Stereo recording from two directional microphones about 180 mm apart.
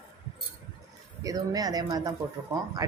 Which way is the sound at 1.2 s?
20° right (ahead or behind).